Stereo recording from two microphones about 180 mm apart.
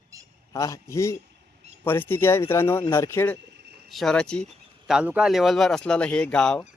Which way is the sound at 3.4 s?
70° right (ahead or behind).